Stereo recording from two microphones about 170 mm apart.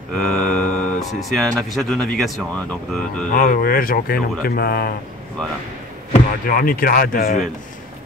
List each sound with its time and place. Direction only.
0.1 s speech: 5° left (ahead or behind)
3.3 s speech: 55° left (ahead or behind)
6.4 s speech: 55° left (ahead or behind)